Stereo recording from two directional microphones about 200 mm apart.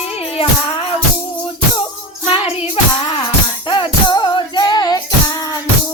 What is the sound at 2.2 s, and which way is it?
Music, 30° left (ahead or behind).